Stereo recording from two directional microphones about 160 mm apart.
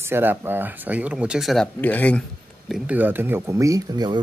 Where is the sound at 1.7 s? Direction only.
10° left (ahead or behind).